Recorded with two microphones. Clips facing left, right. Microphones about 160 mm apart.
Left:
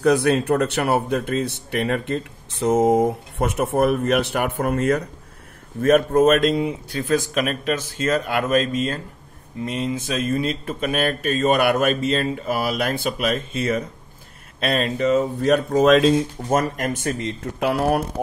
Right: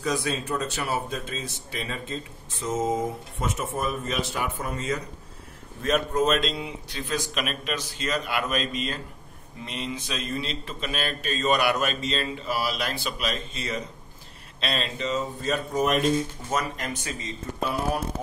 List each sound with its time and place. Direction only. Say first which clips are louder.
0.0 s speech: left 10 dB; 65° left (ahead or behind); by 16.3 s 90° left
16.5 s speech: left 8 dB; 50° left (ahead or behind); by 18.0 s 70° left (ahead or behind)